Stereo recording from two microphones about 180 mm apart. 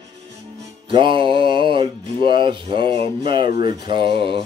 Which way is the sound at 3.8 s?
25° right (ahead or behind).